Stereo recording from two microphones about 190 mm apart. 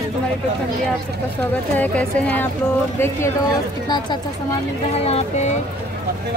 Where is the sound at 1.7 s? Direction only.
10° left (ahead or behind).